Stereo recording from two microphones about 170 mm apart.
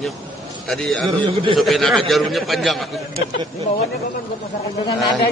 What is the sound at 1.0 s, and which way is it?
Speech, 30° right (ahead or behind).